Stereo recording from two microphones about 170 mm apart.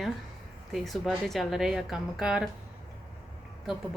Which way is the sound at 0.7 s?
Centre (ahead or behind).